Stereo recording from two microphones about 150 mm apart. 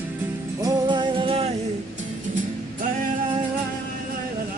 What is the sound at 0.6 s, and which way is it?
Music, 30° right (ahead or behind).